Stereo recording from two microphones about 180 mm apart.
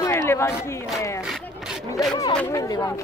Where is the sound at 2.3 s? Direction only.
15° left (ahead or behind).